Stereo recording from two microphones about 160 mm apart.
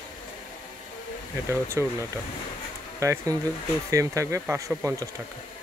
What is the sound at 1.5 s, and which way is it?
Speech, 15° right (ahead or behind).